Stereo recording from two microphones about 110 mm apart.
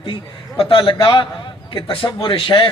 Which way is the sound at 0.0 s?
55° left (ahead or behind).